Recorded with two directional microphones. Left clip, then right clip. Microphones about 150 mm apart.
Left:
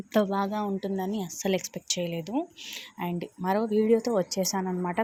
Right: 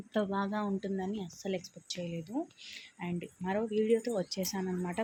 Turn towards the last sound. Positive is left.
turn(degrees=35)  # may be behind; listen again after turning